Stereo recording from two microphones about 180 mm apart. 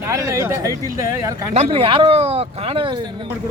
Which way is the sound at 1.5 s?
30° right (ahead or behind).